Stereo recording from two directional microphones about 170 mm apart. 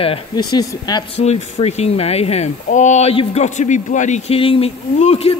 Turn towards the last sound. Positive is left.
turn(degrees=40)  # may be behind; listen again after turning